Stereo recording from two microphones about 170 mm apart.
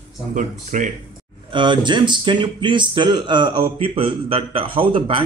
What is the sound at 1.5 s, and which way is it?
Speech, 25° right (ahead or behind).